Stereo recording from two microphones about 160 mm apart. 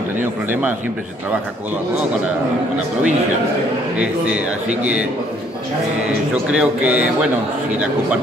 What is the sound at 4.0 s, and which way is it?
A man's voice, 5° right (ahead or behind).